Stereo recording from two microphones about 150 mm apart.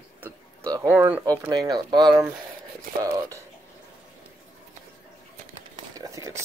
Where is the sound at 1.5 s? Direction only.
25° right (ahead or behind).